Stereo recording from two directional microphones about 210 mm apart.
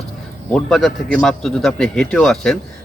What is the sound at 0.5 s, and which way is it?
Speech, centre (ahead or behind).